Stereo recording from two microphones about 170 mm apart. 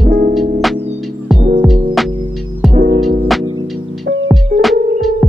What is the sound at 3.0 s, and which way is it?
Music, centre (ahead or behind).